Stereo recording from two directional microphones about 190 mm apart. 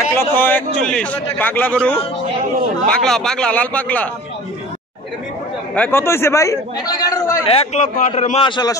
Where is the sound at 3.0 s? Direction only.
5° left (ahead or behind).